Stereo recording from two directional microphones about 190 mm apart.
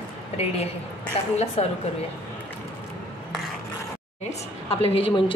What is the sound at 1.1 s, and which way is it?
Speech, 30° left (ahead or behind).